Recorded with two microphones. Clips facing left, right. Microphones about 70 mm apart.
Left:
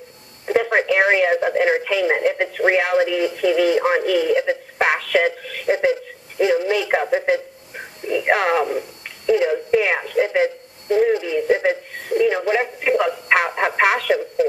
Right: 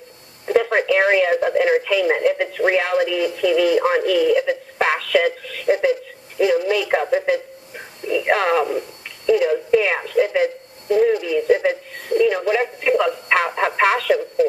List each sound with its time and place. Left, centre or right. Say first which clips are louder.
0.5 s speech: right 1 dB; centre
5.7 s speech: right 1 dB; centre